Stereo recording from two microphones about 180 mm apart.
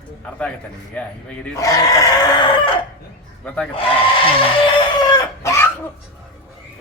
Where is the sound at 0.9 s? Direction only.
10° left (ahead or behind).